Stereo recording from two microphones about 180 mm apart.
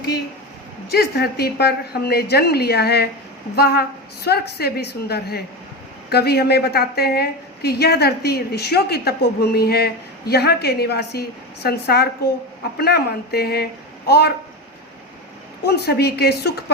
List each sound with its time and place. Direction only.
0.9 s a woman's voice: 65° left (ahead or behind)
15.6 s a woman's voice: 65° left (ahead or behind)